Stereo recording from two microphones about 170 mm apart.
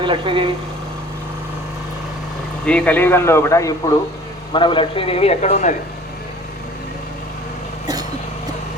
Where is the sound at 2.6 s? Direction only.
5° left (ahead or behind).